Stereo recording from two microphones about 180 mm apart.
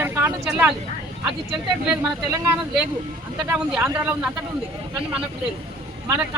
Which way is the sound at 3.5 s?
10° right (ahead or behind).